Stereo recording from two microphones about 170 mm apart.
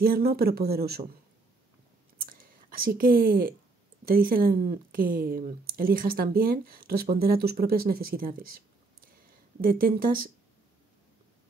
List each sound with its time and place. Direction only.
0.0 s a woman's voice: 65° right (ahead or behind)
2.1 s a sound: 55° right (ahead or behind)
4.0 s a woman's voice: 60° right (ahead or behind)